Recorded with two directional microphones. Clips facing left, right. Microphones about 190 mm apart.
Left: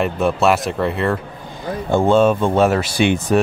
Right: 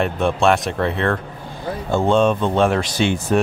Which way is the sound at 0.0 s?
5° left (ahead or behind).